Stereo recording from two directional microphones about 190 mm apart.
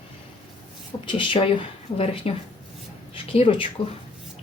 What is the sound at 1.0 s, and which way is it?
Speech, 25° left (ahead or behind).